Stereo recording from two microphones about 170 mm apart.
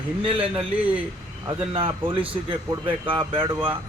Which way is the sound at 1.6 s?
30° right (ahead or behind).